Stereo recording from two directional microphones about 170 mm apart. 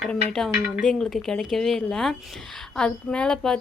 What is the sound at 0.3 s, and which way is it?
A woman's voice, 5° left (ahead or behind).